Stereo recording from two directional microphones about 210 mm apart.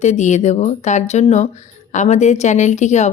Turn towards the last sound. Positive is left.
turn(degrees=35)  # may be behind; listen again after turning